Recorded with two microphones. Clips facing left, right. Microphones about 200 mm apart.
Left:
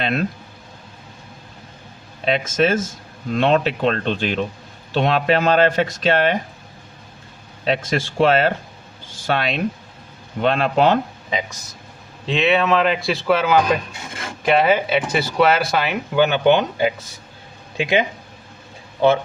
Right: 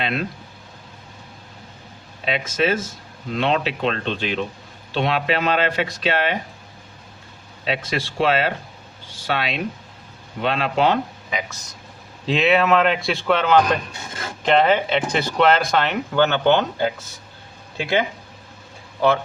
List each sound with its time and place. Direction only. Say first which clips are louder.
0.0 s speech: left 3 dB; 45° left (ahead or behind)
2.2 s speech: left 3 dB; 45° left (ahead or behind)
7.6 s speech: left 4 dB; 45° left (ahead or behind)
11.3 s speech: left 3 dB; 30° left (ahead or behind)
12.2 s a man's voice: even; centre (ahead or behind); by 18.0 s 15° left (ahead or behind)